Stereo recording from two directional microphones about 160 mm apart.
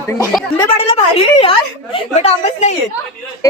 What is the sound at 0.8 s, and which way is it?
A woman's voice, 35° left (ahead or behind).